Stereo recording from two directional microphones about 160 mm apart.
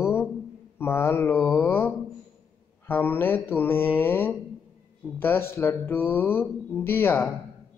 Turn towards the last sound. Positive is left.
turn(degrees=15)  # may be behind; listen again after turning